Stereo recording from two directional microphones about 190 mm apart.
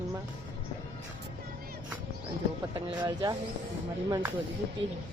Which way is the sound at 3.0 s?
15° right (ahead or behind).